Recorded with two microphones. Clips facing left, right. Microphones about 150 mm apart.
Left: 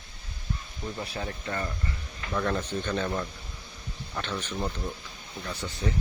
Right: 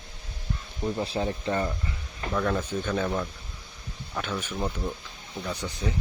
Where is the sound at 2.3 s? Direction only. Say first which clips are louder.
Right 2 dB; centre (ahead or behind).